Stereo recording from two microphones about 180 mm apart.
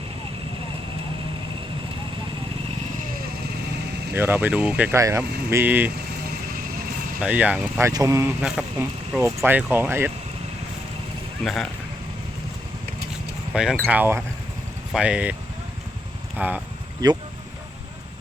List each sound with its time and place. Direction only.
4.1 s speech: 10° right (ahead or behind)
7.2 s speech: 5° right (ahead or behind)
8.4 s speech: 5° right (ahead or behind)
11.4 s speech: centre (ahead or behind)
13.5 s speech: 5° right (ahead or behind)
16.4 s speech: 5° right (ahead or behind)
17.0 s speech: 20° right (ahead or behind)